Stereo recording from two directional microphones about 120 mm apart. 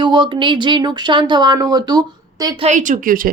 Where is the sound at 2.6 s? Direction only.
90° right.